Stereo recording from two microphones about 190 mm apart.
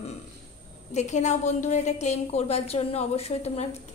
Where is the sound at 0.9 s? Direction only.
40° left (ahead or behind).